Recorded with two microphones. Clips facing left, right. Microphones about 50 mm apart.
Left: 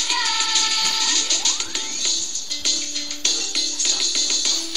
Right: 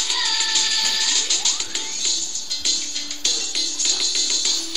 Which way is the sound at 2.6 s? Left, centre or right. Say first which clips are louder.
Left 1 dB; left.